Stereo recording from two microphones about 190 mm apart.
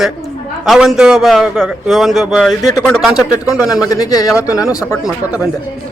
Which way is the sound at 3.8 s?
20° left (ahead or behind).